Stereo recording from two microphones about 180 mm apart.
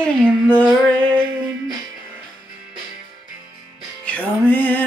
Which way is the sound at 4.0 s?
10° left (ahead or behind).